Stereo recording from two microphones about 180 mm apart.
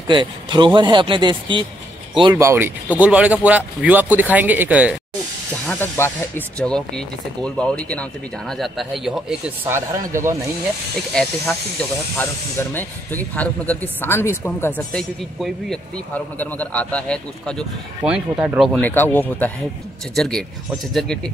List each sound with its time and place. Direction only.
0.1 s speech: 25° right (ahead or behind)
2.3 s speech: 15° right (ahead or behind)
5.7 s speech: 15° left (ahead or behind)
9.7 s speech: 15° right (ahead or behind)
11.1 s speech: 5° left (ahead or behind)
14.9 s speech: 5° left (ahead or behind)
18.7 s speech: 10° left (ahead or behind)